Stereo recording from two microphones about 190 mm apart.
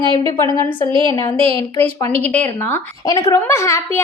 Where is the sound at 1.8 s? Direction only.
10° left (ahead or behind).